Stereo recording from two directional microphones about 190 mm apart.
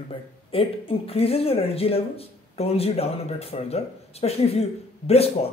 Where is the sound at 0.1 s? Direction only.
25° left (ahead or behind).